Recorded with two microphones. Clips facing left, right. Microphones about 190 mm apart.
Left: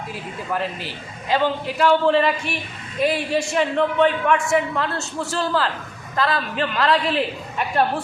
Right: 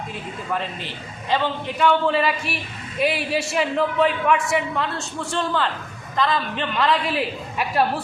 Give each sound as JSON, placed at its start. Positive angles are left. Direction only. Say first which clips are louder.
{"t": 0.5, "sound": "a man's voice", "louder": "left 2 dB", "side_deg": 5}